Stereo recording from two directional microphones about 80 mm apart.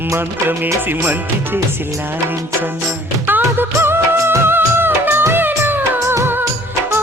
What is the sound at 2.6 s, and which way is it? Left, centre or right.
Music of bollywood, right.